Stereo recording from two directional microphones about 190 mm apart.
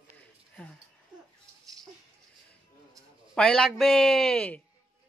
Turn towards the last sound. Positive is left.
turn(degrees=5)  # may be behind; listen again after turning